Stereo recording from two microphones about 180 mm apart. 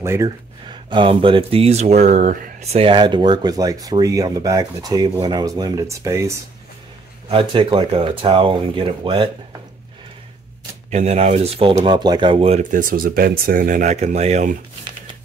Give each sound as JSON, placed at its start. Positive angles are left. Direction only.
{"t": 0.0, "sound": "speech", "side_deg": -15}
{"t": 0.7, "sound": "speech", "side_deg": -25}
{"t": 7.2, "sound": "speech", "side_deg": -30}
{"t": 10.9, "sound": "speech", "side_deg": -40}